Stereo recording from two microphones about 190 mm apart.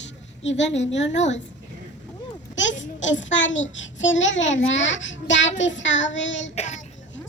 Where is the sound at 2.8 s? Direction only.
75° left (ahead or behind).